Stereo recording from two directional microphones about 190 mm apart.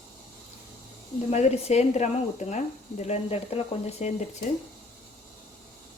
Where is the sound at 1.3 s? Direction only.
35° left (ahead or behind).